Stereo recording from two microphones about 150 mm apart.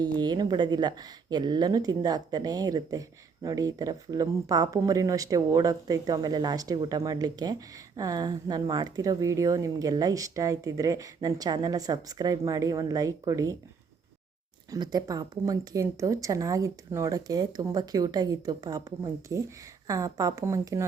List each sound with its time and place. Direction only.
0.0 s speech: 25° right (ahead or behind)
14.7 s speech: 25° right (ahead or behind)